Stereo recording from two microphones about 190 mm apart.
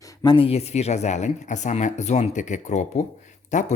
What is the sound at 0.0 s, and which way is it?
Speech, 15° left (ahead or behind).